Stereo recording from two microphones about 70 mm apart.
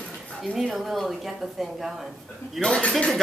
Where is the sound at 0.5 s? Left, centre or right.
Centre.